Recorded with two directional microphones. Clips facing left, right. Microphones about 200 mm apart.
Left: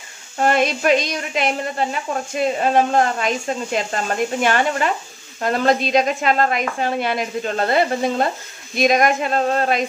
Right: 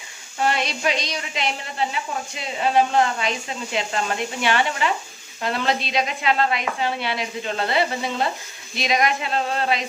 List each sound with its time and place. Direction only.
0.4 s a woman's voice: 50° left (ahead or behind)